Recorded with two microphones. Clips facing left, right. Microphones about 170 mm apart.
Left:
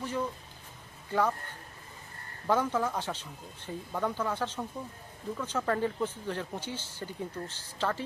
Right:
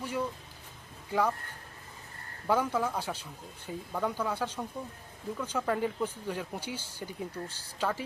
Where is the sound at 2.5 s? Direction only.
10° right (ahead or behind).